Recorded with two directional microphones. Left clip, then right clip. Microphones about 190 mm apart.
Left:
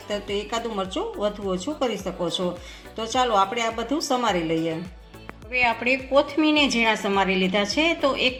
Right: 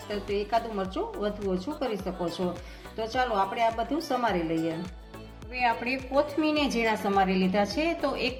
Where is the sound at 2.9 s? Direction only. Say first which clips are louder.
Left 6 dB; 55° left (ahead or behind).